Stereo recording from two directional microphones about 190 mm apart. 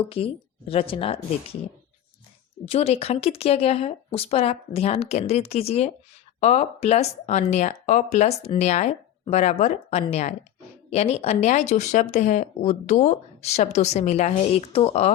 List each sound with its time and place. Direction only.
0.2 s speech: 30° left (ahead or behind)
2.6 s speech: 30° left (ahead or behind)